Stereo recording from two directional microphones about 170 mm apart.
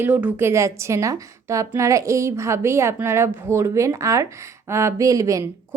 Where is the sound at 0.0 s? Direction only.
10° right (ahead or behind).